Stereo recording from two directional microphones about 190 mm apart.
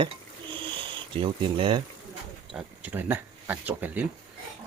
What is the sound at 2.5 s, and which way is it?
Speech, 10° right (ahead or behind).